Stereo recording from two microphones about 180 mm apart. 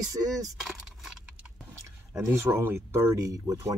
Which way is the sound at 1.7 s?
15° right (ahead or behind).